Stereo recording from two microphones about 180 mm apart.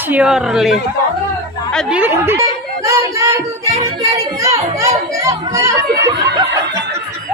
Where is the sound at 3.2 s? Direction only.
15° right (ahead or behind).